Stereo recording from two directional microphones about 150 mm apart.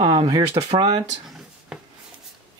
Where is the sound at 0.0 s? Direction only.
30° right (ahead or behind).